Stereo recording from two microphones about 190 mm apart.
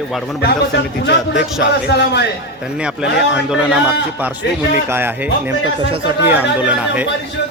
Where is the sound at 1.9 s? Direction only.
60° left (ahead or behind).